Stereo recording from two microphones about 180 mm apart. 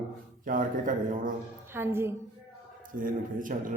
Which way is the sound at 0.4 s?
50° right (ahead or behind).